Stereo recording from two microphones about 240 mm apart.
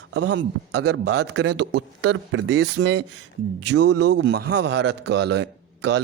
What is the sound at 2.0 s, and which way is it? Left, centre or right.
A man's voice, right.